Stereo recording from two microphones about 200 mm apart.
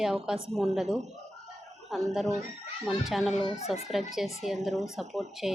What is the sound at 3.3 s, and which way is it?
Speech, 30° left (ahead or behind).